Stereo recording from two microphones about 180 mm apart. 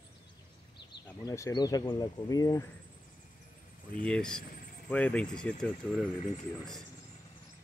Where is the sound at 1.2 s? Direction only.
20° left (ahead or behind).